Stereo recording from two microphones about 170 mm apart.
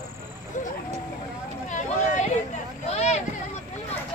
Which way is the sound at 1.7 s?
45° left (ahead or behind).